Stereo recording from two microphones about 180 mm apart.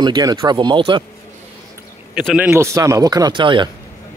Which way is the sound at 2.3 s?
10° right (ahead or behind).